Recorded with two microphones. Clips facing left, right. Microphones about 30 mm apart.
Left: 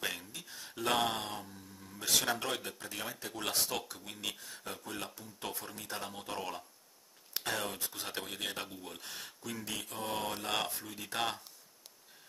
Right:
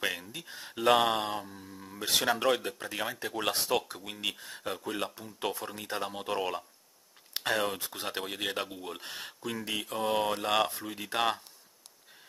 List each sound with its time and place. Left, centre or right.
0.0 s a sound: centre
0.3 s a sound: right
1.0 s mantra: right
2.3 s speech: right
7.8 s speech: right
8.1 s speech: right
9.0 s speech: right
9.9 s speech: centre
10.7 s speech: right